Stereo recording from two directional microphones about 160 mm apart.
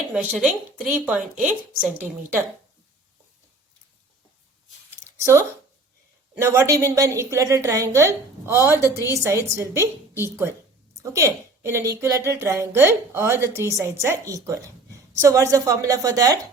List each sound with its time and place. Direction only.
0.1 s a woman's voice: 10° right (ahead or behind)
5.0 s a sound: 15° right (ahead or behind)
6.3 s a woman's voice: 15° right (ahead or behind)